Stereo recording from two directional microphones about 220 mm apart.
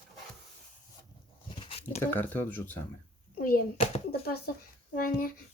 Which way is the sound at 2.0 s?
10° left (ahead or behind).